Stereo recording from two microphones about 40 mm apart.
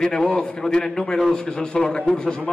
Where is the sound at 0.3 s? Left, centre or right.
Left.